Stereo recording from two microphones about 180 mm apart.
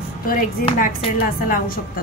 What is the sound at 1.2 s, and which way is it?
Speech, 55° left (ahead or behind).